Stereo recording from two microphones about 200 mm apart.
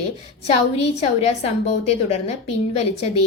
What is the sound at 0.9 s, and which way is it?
Speech, 35° left (ahead or behind).